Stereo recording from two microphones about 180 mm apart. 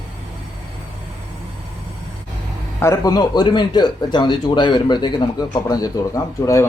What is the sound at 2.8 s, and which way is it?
A man's voice, 20° left (ahead or behind).